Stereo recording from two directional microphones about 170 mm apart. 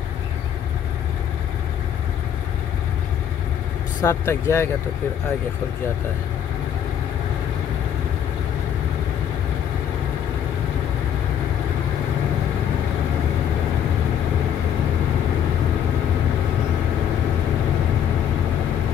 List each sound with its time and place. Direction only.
4.0 s speech: 15° left (ahead or behind)